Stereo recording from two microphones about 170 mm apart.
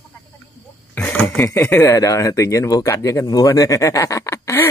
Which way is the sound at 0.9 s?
10° left (ahead or behind).